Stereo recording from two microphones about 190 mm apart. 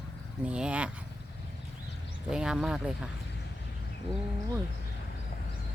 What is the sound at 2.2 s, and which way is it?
Speech, 5° right (ahead or behind).